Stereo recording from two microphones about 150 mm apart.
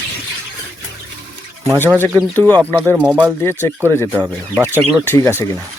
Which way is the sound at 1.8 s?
10° left (ahead or behind).